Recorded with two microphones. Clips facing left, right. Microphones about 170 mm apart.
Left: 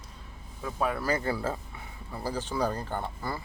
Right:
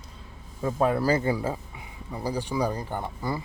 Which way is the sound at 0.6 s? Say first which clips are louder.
Right 6 dB; 30° right (ahead or behind).